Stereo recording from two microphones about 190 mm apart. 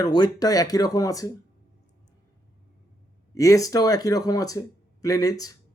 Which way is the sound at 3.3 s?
15° left (ahead or behind).